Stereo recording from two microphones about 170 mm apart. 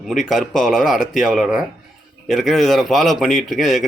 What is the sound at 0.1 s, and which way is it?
A man's voice, centre (ahead or behind).